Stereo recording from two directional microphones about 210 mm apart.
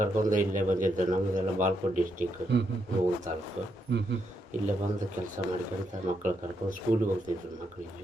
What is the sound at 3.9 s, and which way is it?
Speech, 55° right (ahead or behind).